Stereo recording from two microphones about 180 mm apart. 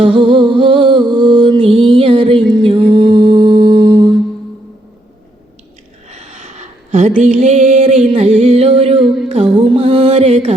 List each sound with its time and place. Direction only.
0.0 s music: 25° right (ahead or behind)
6.1 s a sound: 40° right (ahead or behind)
9.6 s music: 30° right (ahead or behind)